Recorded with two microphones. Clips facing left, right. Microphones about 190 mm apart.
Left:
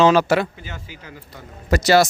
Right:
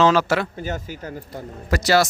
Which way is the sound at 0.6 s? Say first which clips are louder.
Right 9 dB; 45° right (ahead or behind).